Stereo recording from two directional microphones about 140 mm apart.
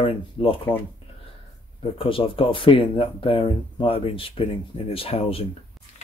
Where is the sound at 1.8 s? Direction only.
40° left (ahead or behind).